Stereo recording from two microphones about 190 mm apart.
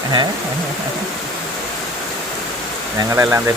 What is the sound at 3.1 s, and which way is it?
Speech, 15° right (ahead or behind).